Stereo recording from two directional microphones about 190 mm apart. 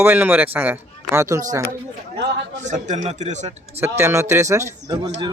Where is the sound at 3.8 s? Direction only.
15° right (ahead or behind).